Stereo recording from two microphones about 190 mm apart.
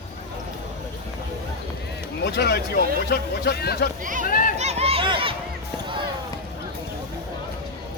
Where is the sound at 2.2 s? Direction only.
60° left (ahead or behind).